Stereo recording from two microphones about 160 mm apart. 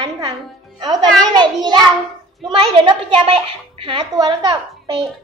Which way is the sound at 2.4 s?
30° right (ahead or behind).